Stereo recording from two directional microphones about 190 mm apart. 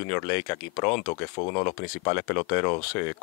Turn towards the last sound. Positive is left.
turn(degrees=15)  # may be behind; listen again after turning